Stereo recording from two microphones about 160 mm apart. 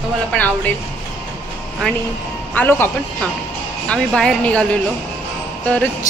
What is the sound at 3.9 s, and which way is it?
Speech, 5° left (ahead or behind).